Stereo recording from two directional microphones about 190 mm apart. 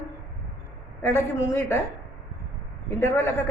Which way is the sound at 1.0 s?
15° left (ahead or behind).